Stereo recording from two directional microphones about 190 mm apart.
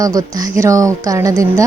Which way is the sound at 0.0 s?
20° right (ahead or behind).